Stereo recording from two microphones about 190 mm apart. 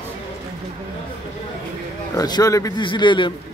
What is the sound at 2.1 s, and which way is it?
A man's voice, 20° left (ahead or behind).